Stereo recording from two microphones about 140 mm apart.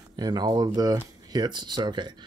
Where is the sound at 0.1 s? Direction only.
30° right (ahead or behind).